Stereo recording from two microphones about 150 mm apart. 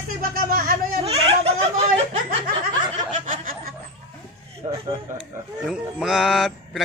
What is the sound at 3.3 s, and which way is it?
Snicker, 70° right (ahead or behind).